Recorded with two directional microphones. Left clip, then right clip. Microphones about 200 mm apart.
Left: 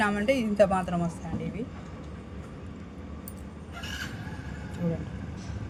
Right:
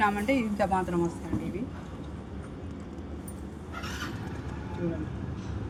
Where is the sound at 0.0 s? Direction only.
65° left (ahead or behind).